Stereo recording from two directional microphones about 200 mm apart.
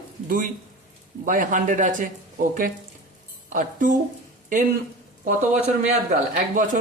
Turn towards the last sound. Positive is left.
turn(degrees=-35)  # may be behind; listen again after turning